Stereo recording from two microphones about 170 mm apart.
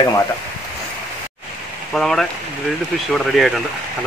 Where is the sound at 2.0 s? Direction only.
Centre (ahead or behind).